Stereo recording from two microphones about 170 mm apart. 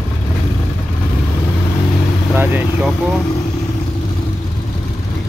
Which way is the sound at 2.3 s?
10° right (ahead or behind).